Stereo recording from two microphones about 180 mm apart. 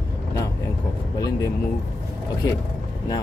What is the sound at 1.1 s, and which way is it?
Speech, 20° left (ahead or behind).